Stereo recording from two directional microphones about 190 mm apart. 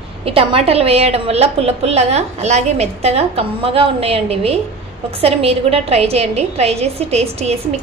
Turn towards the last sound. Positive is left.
turn(degrees=-35)  # may be behind; listen again after turning